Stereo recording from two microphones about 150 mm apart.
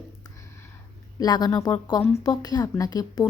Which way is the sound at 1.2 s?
25° left (ahead or behind).